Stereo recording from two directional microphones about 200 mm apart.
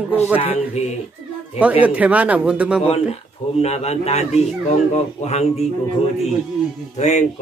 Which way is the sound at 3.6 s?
30° left (ahead or behind).